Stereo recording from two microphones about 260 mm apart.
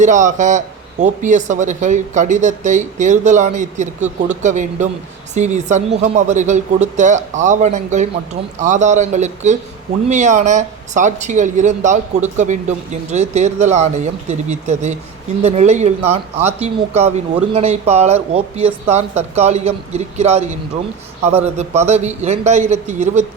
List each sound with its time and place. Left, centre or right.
0.0 s speech: right